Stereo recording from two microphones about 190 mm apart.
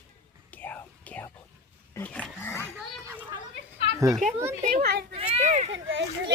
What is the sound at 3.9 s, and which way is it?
Speech, 20° right (ahead or behind).